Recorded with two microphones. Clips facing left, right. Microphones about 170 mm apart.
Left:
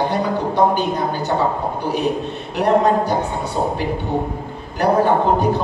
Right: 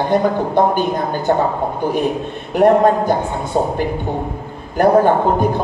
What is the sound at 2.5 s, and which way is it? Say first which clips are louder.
Speech: right 4 dB; 50° right (ahead or behind).